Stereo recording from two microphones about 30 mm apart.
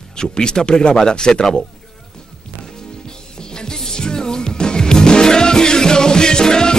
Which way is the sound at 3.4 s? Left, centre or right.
Left.